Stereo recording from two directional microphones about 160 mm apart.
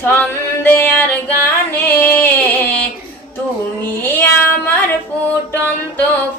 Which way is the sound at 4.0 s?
15° left (ahead or behind).